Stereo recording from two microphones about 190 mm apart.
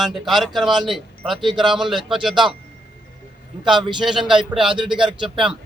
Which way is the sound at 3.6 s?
5° right (ahead or behind).